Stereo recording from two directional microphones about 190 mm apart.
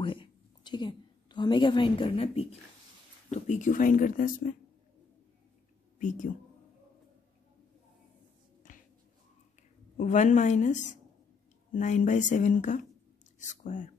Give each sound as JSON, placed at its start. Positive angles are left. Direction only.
{"t": 0.0, "sound": "a sound", "side_deg": 25}
{"t": 3.3, "sound": "speech", "side_deg": 40}
{"t": 5.9, "sound": "speech", "side_deg": 45}
{"t": 9.9, "sound": "speech", "side_deg": 40}